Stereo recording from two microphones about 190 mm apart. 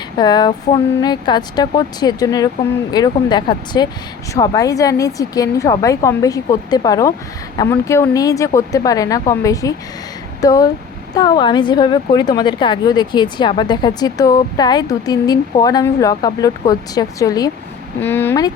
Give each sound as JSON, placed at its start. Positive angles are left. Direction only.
{"t": 0.2, "sound": "a woman's voice", "side_deg": 20}